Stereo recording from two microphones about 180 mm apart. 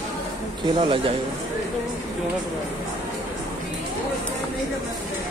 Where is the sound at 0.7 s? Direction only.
30° right (ahead or behind).